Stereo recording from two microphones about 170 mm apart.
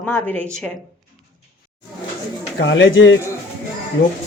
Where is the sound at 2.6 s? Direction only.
90° left.